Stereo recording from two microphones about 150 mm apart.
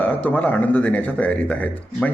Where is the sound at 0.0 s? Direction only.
10° left (ahead or behind).